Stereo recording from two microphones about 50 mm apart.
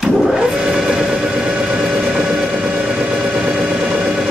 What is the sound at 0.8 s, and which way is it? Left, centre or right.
Vehicle, centre.